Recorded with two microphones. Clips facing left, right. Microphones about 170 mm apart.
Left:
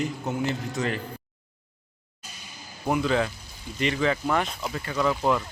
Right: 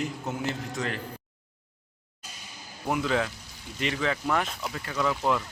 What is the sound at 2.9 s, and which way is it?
Speech, centre (ahead or behind).